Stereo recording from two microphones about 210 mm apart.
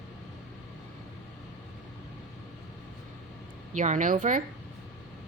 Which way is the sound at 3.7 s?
35° right (ahead or behind).